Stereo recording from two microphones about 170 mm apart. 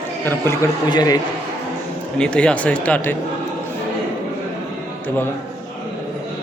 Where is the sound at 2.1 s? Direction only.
5° left (ahead or behind).